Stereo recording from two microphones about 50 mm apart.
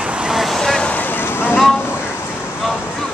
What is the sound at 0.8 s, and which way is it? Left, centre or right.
Vehicle, left.